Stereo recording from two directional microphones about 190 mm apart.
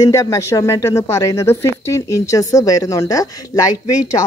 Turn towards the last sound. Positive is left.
turn(degrees=20)  # may be behind; listen again after turning